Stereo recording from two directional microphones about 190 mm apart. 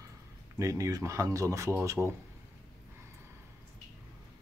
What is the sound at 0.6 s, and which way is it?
Speech, 15° right (ahead or behind).